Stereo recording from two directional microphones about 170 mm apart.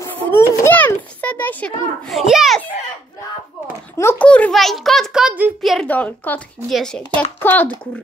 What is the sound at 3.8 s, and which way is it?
A child's voice, 10° left (ahead or behind).